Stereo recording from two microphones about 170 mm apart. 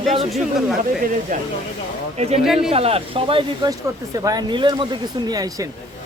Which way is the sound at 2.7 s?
35° right (ahead or behind).